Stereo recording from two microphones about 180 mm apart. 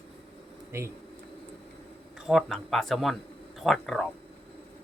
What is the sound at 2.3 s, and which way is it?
Speech, centre (ahead or behind).